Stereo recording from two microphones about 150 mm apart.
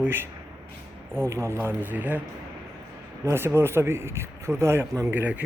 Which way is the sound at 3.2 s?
15° right (ahead or behind).